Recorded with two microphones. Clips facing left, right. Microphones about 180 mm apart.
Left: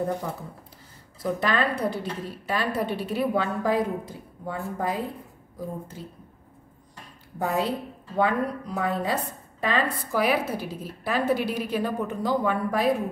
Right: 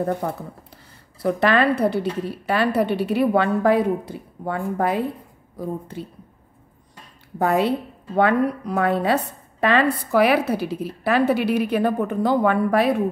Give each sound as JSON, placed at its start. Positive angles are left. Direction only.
{"t": 0.0, "sound": "a woman's voice", "side_deg": -60}
{"t": 7.3, "sound": "a woman's voice", "side_deg": -65}